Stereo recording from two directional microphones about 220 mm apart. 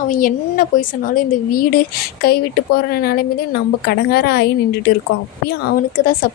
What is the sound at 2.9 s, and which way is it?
A woman's voice, 45° left (ahead or behind).